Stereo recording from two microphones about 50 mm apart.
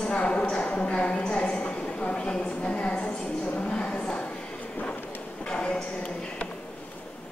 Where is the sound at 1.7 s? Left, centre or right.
Left.